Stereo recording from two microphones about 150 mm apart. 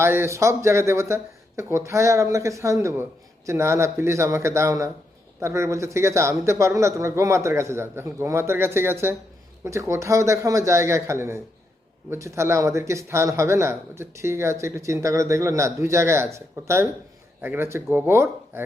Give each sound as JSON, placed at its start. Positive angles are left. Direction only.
{"t": 0.0, "sound": "speech", "side_deg": -15}